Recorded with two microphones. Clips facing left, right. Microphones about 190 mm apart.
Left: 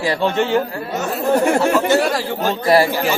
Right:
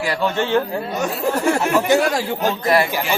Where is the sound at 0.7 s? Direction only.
15° right (ahead or behind).